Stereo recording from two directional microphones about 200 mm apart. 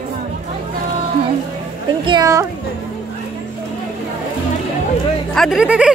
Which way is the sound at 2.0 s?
20° right (ahead or behind).